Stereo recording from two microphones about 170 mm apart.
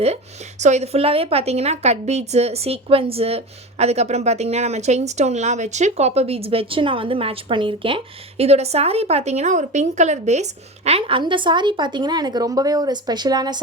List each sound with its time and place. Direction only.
0.6 s a woman's voice: 40° right (ahead or behind); by 13.6 s 25° right (ahead or behind)